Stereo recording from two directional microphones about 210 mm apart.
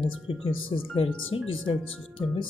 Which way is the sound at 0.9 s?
25° left (ahead or behind).